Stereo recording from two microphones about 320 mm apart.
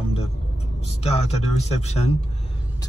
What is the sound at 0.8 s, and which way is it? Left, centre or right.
A man's voice, centre.